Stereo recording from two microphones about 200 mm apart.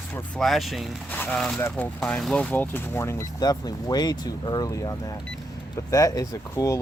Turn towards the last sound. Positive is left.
turn(degrees=15)  # may be behind; listen again after turning